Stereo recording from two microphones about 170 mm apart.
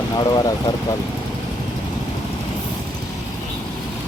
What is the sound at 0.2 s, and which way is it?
Speech, 20° left (ahead or behind).